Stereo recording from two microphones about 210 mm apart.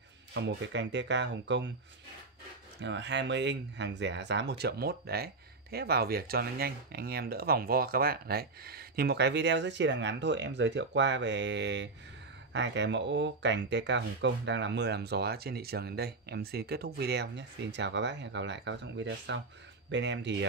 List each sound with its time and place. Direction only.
0.3 s speech: 55° right (ahead or behind)
2.8 s speech: 55° right (ahead or behind)